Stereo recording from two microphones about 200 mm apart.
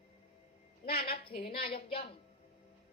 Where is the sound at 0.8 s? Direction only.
50° left (ahead or behind).